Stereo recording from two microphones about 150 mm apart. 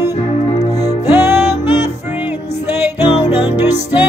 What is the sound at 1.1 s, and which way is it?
Music, 15° right (ahead or behind).